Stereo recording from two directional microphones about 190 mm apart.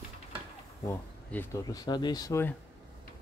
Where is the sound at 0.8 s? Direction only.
15° left (ahead or behind).